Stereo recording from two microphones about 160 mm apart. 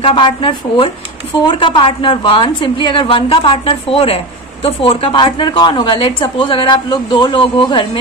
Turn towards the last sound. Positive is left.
turn(degrees=30)  # may be behind; listen again after turning